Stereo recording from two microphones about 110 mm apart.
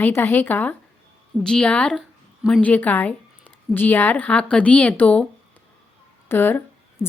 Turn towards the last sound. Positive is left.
turn(degrees=20)  # may be behind; listen again after turning